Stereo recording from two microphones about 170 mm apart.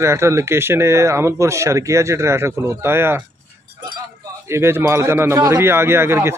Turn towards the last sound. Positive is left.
turn(degrees=-15)  # may be behind; listen again after turning